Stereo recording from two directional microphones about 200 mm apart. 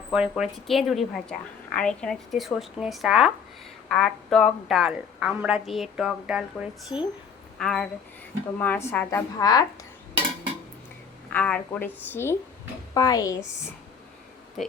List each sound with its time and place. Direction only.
0.1 s a woman's voice: 5° right (ahead or behind); by 9.6 s 20° left (ahead or behind)
11.3 s a woman's voice: 5° left (ahead or behind)